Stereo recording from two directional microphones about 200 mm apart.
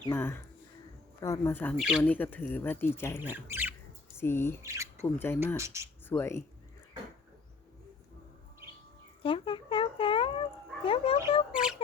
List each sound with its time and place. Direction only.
0.1 s speech: 10° left (ahead or behind)
1.7 s speech: 5° right (ahead or behind)
2.0 s speech: 10° left (ahead or behind)
3.2 s speech: 10° right (ahead or behind)
4.2 s speech: 10° left (ahead or behind)
4.6 s speech: 15° right (ahead or behind)
5.1 s speech: 10° left (ahead or behind)
5.5 s speech: 15° right (ahead or behind)
6.1 s speech: 10° left (ahead or behind)
9.2 s cat: 25° left (ahead or behind)
10.8 s dog: 30° left (ahead or behind)
11.5 s a sound: 5° right (ahead or behind)